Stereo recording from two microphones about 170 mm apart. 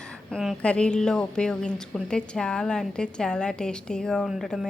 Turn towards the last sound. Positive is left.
turn(degrees=0)  # may be behind; listen again after turning